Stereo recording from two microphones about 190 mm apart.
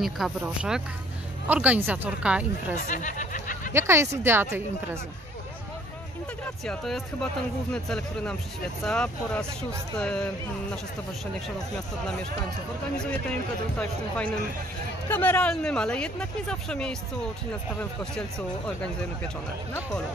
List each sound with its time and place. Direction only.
0.0 s speech: 5° right (ahead or behind)
2.9 s a sound: 40° left (ahead or behind)
3.7 s speech: 15° right (ahead or behind)
6.6 s speech: centre (ahead or behind)
13.0 s speech: 5° left (ahead or behind)